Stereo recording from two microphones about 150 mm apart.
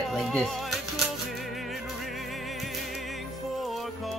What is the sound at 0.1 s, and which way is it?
Music, centre (ahead or behind).